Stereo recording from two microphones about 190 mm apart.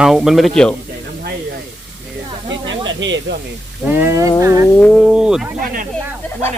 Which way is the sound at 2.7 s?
75° right (ahead or behind).